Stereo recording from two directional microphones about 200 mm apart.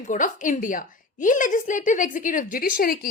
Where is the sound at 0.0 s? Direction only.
40° left (ahead or behind).